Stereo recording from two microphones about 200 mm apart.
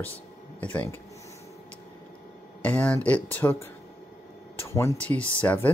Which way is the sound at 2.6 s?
5° left (ahead or behind).